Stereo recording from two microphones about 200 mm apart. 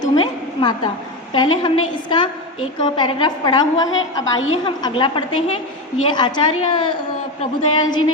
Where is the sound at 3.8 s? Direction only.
80° left.